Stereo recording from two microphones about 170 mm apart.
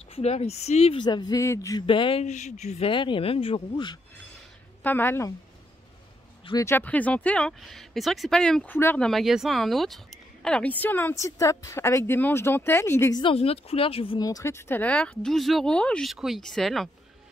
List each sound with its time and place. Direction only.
0.1 s speech: 35° left (ahead or behind)
2.9 s speech: 30° left (ahead or behind)
4.8 s speech: 10° left (ahead or behind)
6.4 s speech: 20° left (ahead or behind)
13.2 s speech: 35° left (ahead or behind)
14.2 s speech: 20° left (ahead or behind); by 16.9 s centre (ahead or behind)